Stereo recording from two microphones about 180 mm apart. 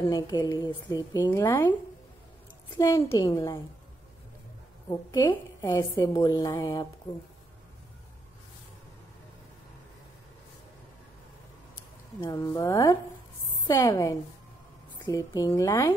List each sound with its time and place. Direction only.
0.1 s a woman's voice: 20° left (ahead or behind)
4.8 s a woman's voice: 20° left (ahead or behind)
12.2 s a woman's voice: 20° left (ahead or behind)